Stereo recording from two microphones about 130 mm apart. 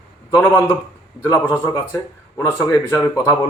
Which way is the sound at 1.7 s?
20° left (ahead or behind).